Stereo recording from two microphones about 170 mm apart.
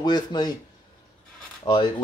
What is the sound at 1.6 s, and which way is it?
Speech, 25° left (ahead or behind).